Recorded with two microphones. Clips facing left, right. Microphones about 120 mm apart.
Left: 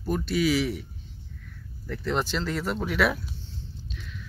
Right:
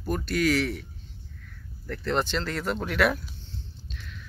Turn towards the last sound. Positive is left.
turn(degrees=5)  # may be behind; listen again after turning